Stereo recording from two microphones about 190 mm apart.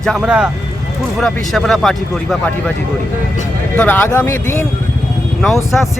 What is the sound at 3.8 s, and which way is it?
Speech, 10° left (ahead or behind).